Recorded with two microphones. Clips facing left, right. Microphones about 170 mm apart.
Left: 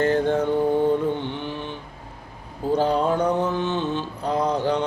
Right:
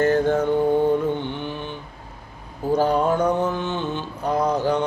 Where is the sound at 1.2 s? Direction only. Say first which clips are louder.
Right 1 dB; 30° left (ahead or behind).